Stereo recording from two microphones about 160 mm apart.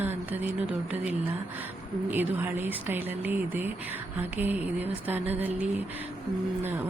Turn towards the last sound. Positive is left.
turn(degrees=-10)  # may be behind; listen again after turning